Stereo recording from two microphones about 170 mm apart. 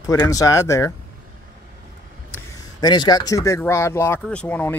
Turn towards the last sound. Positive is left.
turn(degrees=10)  # may be behind; listen again after turning